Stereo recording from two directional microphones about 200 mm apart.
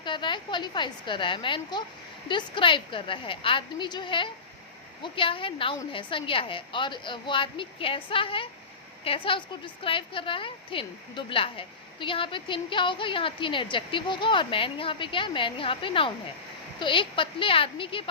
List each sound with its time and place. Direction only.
0.0 s a woman's voice: 25° left (ahead or behind)